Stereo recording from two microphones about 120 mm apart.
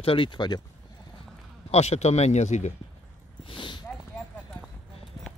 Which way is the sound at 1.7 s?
65° left (ahead or behind).